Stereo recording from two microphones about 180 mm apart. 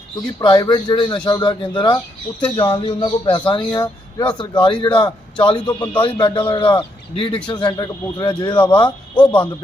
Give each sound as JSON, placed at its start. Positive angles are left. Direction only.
{"t": 0.3, "sound": "a man's voice", "side_deg": 20}